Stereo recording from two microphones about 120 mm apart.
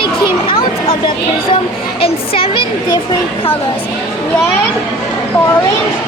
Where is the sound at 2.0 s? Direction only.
50° left (ahead or behind).